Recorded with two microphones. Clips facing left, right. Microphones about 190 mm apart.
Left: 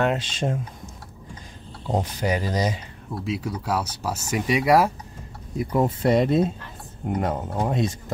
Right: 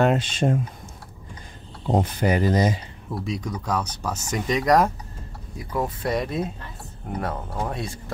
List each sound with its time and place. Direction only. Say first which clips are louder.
0.0 s speech: right 3 dB; 50° right (ahead or behind)
2.1 s speech: right 4 dB; 55° right (ahead or behind)
3.3 s speech: left 2 dB; 5° left (ahead or behind)
5.6 s speech: left 5 dB; 25° left (ahead or behind)